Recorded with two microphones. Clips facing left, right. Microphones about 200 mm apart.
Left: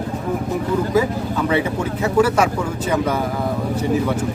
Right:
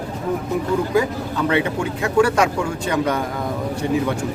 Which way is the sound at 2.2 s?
5° left (ahead or behind).